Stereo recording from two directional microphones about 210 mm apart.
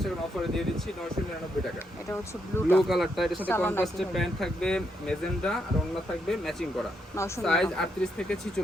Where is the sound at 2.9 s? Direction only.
Centre (ahead or behind).